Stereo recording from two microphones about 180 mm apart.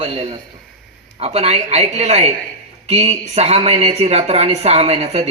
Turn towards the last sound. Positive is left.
turn(degrees=-35)  # may be behind; listen again after turning